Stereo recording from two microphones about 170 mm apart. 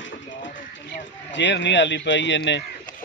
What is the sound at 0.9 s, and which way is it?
Speech, 90° left.